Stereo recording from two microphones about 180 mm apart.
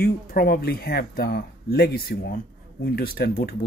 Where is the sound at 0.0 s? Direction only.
55° left (ahead or behind).